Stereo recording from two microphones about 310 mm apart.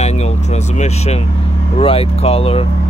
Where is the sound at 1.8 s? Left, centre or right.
Centre.